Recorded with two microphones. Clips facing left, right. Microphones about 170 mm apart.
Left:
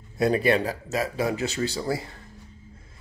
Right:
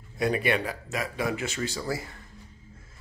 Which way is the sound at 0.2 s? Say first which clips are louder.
Left 4 dB; 35° left (ahead or behind).